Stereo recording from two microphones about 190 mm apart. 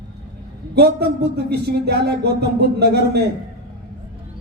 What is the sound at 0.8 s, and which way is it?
Speech, 60° right (ahead or behind).